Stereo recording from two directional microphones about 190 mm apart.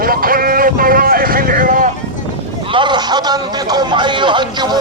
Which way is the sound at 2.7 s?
25° right (ahead or behind).